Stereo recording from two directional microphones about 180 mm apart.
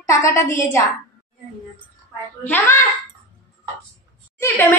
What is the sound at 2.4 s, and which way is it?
Speech, 10° left (ahead or behind).